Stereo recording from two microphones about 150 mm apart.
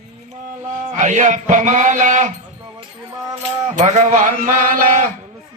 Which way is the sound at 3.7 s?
50° right (ahead or behind).